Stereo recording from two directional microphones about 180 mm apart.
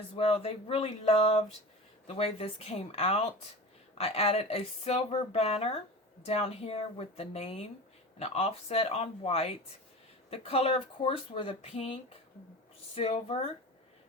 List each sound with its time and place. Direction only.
0.2 s speech: 30° left (ahead or behind)